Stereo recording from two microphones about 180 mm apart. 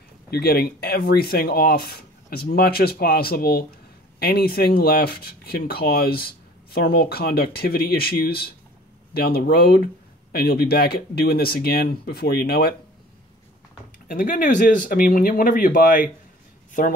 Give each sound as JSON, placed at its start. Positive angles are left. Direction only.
{"t": 0.3, "sound": "speech", "side_deg": 60}
{"t": 14.0, "sound": "speech", "side_deg": 50}